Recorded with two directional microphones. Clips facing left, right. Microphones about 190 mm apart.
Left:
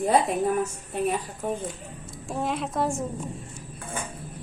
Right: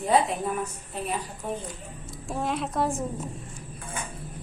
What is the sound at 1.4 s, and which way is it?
Speech, 50° left (ahead or behind).